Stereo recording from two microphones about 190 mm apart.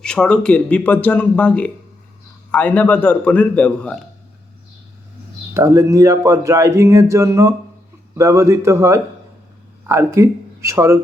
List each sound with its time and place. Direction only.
0.0 s speech: 5° left (ahead or behind)
5.5 s speech: 15° right (ahead or behind)